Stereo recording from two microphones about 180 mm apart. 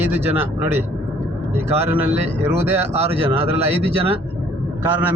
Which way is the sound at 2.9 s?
35° right (ahead or behind).